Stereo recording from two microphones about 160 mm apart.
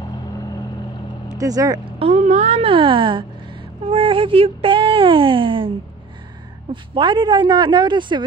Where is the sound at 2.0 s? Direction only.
45° right (ahead or behind).